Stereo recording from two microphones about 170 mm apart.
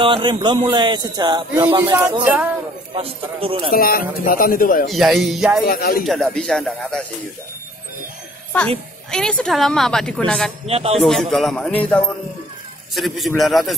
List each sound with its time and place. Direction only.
0.0 s speech: 30° right (ahead or behind)
2.0 s speech: 10° right (ahead or behind)
2.9 s a man's voice: 30° right (ahead or behind)
3.7 s a man's voice: 60° left (ahead or behind)
4.8 s a woman's voice: centre (ahead or behind)
5.7 s a man's voice: 60° left (ahead or behind)
6.0 s a woman's voice: 5° left (ahead or behind)
9.1 s a woman's voice: 5° left (ahead or behind)
10.7 s a man's voice: 35° right (ahead or behind)
11.0 s a woman's voice: centre (ahead or behind)